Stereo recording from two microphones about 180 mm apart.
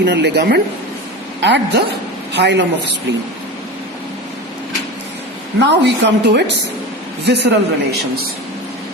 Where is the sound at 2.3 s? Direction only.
75° right (ahead or behind).